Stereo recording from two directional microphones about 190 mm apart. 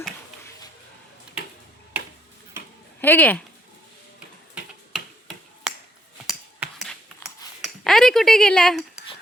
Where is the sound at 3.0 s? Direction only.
10° left (ahead or behind).